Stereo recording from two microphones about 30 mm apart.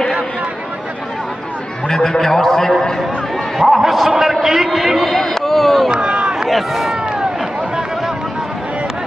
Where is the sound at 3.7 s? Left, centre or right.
Centre.